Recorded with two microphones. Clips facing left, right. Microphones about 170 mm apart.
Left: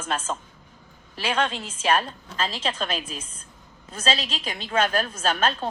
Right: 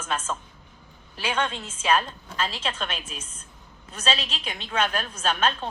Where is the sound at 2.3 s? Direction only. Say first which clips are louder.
Left 2 dB; 35° left (ahead or behind).